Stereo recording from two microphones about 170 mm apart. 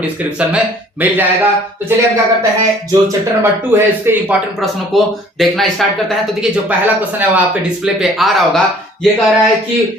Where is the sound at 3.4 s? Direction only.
15° right (ahead or behind).